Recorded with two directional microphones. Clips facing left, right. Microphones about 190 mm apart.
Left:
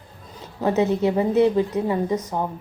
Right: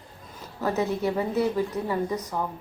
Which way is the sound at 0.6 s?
20° left (ahead or behind).